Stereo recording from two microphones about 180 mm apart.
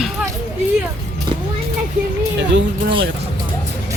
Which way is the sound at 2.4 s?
75° right (ahead or behind).